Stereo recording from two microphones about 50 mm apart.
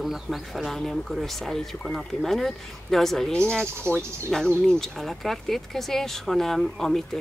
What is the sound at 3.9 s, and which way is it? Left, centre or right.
Speech, centre.